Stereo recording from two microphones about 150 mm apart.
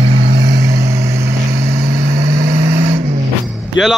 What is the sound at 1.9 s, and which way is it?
Vehicle, 90° right.